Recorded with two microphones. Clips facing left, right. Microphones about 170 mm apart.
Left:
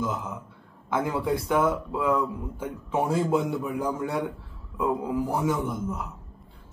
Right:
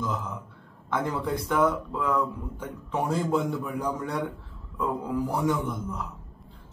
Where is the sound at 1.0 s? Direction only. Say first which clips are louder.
Left 3 dB; 5° left (ahead or behind).